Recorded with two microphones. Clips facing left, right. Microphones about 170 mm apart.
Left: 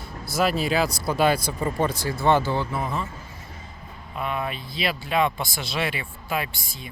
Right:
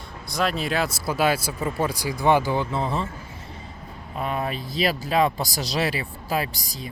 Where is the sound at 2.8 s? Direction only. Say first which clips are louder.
Right 2 dB; 30° right (ahead or behind).